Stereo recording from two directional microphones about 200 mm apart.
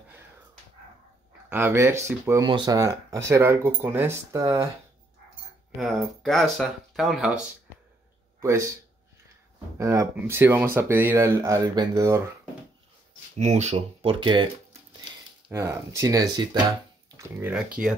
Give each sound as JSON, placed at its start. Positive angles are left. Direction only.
{"t": 1.5, "sound": "speech", "side_deg": -10}
{"t": 5.8, "sound": "speech", "side_deg": 0}
{"t": 8.4, "sound": "speech", "side_deg": -15}
{"t": 9.8, "sound": "speech", "side_deg": -15}
{"t": 13.4, "sound": "speech", "side_deg": -35}
{"t": 15.5, "sound": "speech", "side_deg": -15}